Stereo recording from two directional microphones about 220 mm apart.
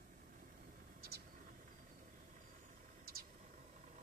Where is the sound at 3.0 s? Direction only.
40° right (ahead or behind).